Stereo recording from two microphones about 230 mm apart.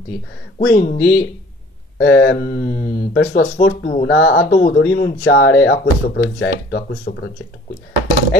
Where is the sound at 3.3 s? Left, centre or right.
Left.